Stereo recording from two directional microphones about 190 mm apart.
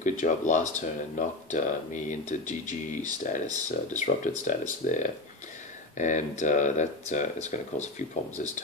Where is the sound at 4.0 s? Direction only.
40° left (ahead or behind).